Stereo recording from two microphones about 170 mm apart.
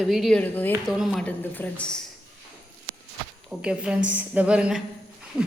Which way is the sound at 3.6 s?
5° right (ahead or behind).